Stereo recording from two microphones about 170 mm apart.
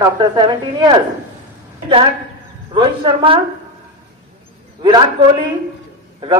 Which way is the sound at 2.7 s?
30° right (ahead or behind).